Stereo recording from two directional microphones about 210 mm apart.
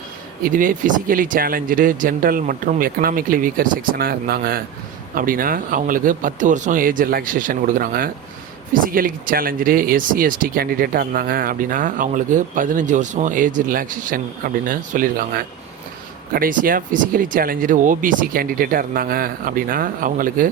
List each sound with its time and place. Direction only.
0.4 s speech: 40° right (ahead or behind)